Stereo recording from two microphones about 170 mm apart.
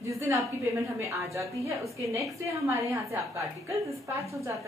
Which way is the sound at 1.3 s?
15° right (ahead or behind).